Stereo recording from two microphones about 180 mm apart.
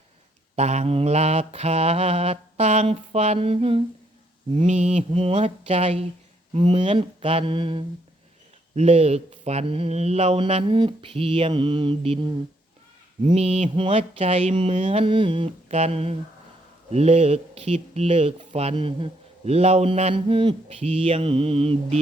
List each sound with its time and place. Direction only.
0.5 s speech: 40° right (ahead or behind)
13.2 s speech: 35° right (ahead or behind)